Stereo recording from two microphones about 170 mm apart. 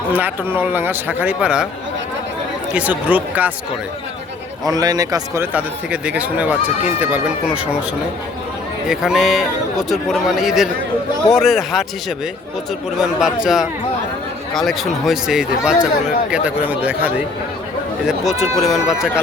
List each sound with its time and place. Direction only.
0.1 s speech: 10° right (ahead or behind)
2.7 s speech: 10° right (ahead or behind)
4.6 s speech: 20° right (ahead or behind); by 7.8 s 5° right (ahead or behind)
8.9 s speech: 5° right (ahead or behind)
13.0 s speech: 5° right (ahead or behind)